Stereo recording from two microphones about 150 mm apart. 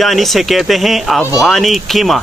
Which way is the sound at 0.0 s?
Centre (ahead or behind).